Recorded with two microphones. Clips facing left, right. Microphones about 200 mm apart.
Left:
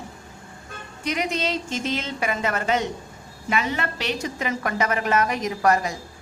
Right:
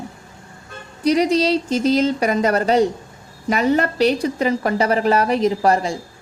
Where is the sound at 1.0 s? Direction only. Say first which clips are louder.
Right 10 dB; 35° right (ahead or behind).